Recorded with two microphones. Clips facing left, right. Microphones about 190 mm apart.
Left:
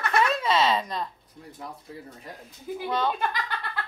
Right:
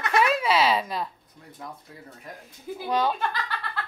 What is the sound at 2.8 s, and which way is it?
Speech, 10° right (ahead or behind).